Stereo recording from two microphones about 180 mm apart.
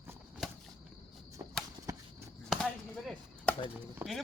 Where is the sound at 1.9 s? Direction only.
20° right (ahead or behind).